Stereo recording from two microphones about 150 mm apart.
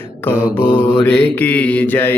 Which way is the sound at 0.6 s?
35° left (ahead or behind).